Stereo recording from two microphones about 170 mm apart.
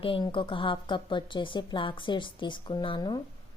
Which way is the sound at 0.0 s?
30° left (ahead or behind).